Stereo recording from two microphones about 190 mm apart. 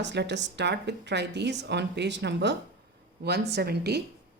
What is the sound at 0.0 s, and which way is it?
A woman's voice, 65° right (ahead or behind).